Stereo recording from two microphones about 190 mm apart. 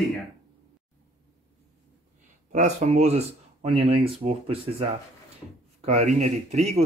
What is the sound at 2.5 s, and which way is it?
Speech, 40° right (ahead or behind).